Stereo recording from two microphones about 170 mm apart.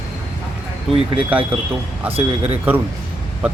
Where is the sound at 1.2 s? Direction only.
10° right (ahead or behind).